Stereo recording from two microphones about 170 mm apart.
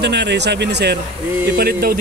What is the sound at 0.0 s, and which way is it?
Speech, 90° right.